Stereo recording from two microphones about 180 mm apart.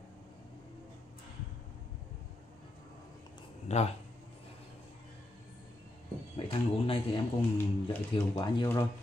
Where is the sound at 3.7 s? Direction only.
40° left (ahead or behind).